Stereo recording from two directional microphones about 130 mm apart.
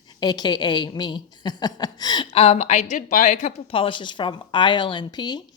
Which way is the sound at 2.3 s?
55° left (ahead or behind).